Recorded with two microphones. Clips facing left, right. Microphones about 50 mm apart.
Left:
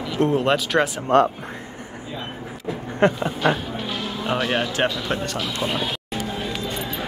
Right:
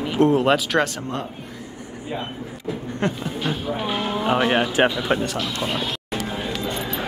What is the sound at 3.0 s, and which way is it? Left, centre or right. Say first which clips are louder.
Speech: left 7 dB; left.